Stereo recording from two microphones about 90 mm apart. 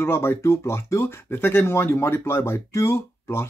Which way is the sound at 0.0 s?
25° left (ahead or behind).